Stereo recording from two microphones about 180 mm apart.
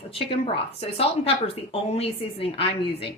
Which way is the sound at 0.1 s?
30° left (ahead or behind).